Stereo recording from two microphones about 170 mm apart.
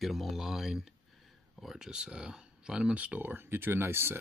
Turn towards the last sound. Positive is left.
turn(degrees=-15)  # may be behind; listen again after turning